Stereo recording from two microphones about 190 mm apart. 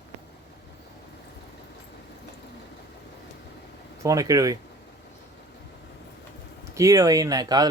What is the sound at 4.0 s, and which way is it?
Speech, 15° right (ahead or behind).